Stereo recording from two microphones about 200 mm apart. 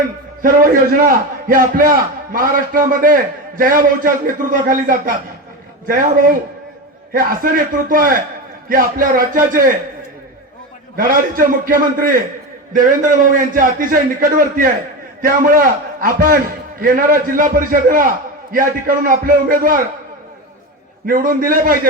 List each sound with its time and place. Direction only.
0.4 s a man's voice: 45° right (ahead or behind)
7.9 s a man's voice: 45° right (ahead or behind)
10.9 s a man's voice: 45° right (ahead or behind)
21.1 s a man's voice: 45° right (ahead or behind)